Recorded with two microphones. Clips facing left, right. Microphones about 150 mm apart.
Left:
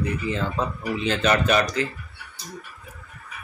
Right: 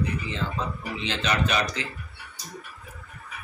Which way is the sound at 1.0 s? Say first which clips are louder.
Left 5 dB; 50° left (ahead or behind).